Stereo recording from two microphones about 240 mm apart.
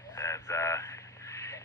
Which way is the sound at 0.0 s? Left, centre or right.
Centre.